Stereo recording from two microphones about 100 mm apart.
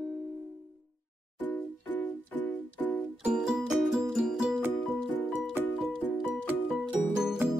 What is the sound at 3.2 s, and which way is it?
Music, 5° right (ahead or behind).